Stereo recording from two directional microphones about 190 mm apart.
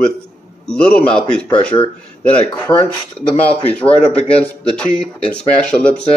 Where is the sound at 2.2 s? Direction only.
10° left (ahead or behind).